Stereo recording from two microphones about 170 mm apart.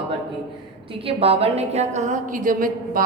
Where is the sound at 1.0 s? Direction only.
35° right (ahead or behind).